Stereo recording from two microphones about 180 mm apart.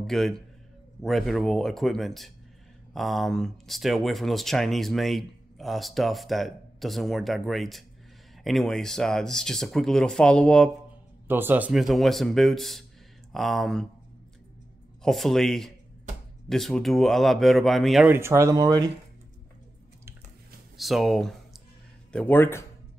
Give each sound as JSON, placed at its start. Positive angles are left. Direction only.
{"t": 0.0, "sound": "a man's voice", "side_deg": 0}
{"t": 11.2, "sound": "speech", "side_deg": -10}
{"t": 15.0, "sound": "speech", "side_deg": 0}
{"t": 18.1, "sound": "speech", "side_deg": -15}
{"t": 20.7, "sound": "speech", "side_deg": 0}